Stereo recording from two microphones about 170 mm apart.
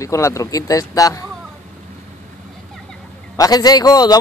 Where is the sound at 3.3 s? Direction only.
20° left (ahead or behind).